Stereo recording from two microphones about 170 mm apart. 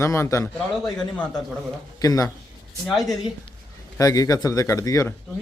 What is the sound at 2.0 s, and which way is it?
Speech, 20° left (ahead or behind).